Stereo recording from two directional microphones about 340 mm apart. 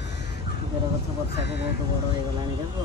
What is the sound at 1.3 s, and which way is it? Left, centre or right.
Speech, left.